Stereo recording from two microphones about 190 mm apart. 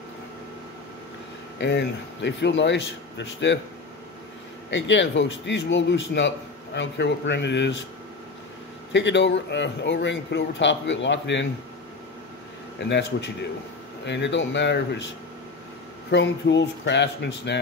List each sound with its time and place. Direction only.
1.6 s a man's voice: 65° left (ahead or behind)
4.6 s a man's voice: 70° left (ahead or behind)
8.9 s a man's voice: 70° left (ahead or behind)
12.7 s a man's voice: 65° left (ahead or behind)
16.1 s a man's voice: 70° left (ahead or behind)